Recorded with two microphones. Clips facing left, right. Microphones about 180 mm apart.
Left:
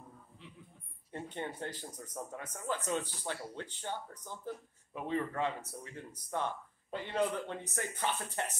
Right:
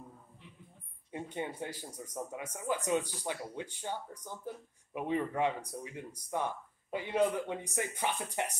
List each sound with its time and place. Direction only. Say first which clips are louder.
1.1 s speech: right 2 dB; 10° right (ahead or behind)